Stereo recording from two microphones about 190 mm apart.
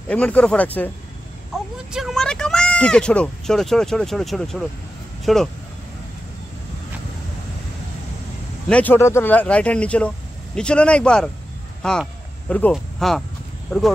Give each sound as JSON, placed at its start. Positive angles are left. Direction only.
{"t": 0.1, "sound": "speech", "side_deg": 5}
{"t": 1.9, "sound": "speech", "side_deg": 0}
{"t": 8.6, "sound": "speech", "side_deg": 10}